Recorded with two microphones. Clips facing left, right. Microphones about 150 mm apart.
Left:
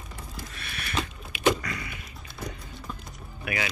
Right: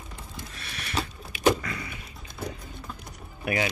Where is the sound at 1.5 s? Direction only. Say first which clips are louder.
Right 1 dB; 25° right (ahead or behind).